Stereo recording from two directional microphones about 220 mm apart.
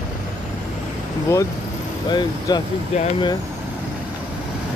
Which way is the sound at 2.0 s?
20° left (ahead or behind).